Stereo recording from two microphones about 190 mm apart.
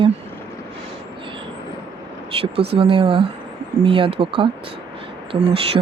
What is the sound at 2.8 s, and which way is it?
Speech, 25° right (ahead or behind).